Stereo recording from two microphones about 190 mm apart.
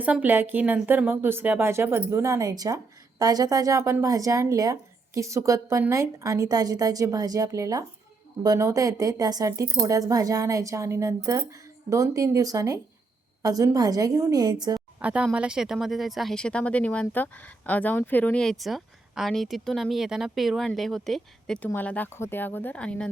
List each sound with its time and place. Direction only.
0.0 s a woman's voice: 10° right (ahead or behind)
15.0 s a woman's voice: 5° right (ahead or behind)